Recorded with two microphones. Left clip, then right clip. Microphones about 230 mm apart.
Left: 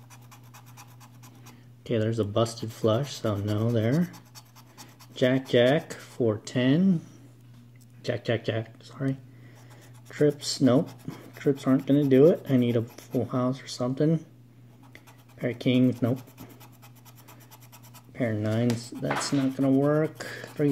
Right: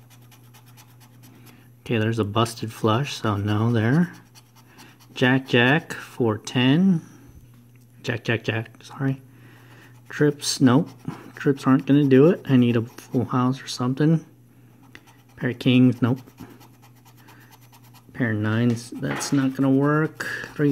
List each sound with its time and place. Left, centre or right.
1.8 s speech: right
5.1 s speech: right
8.0 s speech: right
14.9 s scratch: right
18.1 s speech: right